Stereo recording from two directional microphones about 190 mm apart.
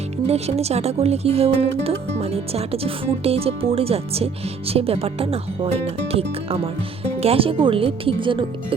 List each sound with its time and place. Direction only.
0.3 s speech: 35° right (ahead or behind)